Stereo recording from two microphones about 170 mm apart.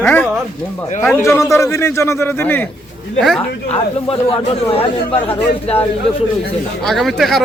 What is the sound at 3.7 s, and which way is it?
Speech, 35° left (ahead or behind).